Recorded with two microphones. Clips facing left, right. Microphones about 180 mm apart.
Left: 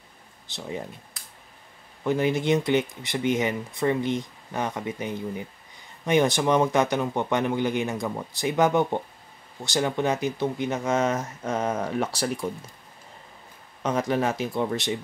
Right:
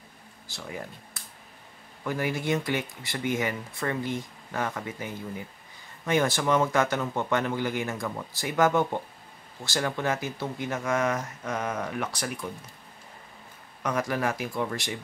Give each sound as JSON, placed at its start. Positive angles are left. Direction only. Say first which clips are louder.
{"t": 0.5, "sound": "speech", "louder": "left 4 dB", "side_deg": 20}
{"t": 2.0, "sound": "speech", "louder": "left 5 dB", "side_deg": 20}
{"t": 13.8, "sound": "speech", "louder": "left 3 dB", "side_deg": 25}